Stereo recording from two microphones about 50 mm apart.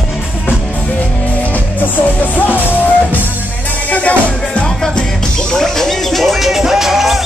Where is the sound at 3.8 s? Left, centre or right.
Left.